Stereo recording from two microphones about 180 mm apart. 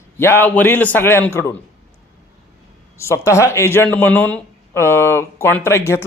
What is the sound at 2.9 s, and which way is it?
Speech, 15° left (ahead or behind).